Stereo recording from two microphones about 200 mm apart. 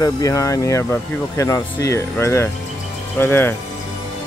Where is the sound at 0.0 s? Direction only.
15° left (ahead or behind).